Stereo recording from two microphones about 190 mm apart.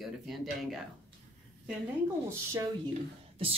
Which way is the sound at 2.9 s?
30° right (ahead or behind).